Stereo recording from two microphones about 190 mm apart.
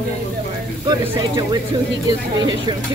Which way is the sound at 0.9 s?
20° right (ahead or behind).